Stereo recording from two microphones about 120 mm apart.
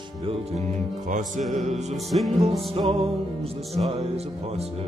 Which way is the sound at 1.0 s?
90° right.